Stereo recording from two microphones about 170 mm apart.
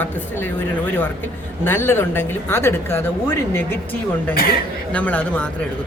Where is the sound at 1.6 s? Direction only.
15° left (ahead or behind).